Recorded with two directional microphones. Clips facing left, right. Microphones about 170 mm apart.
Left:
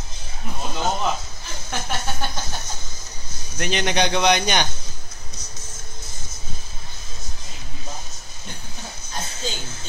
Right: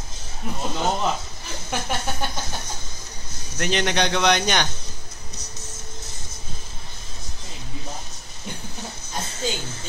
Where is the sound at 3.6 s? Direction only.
5° left (ahead or behind).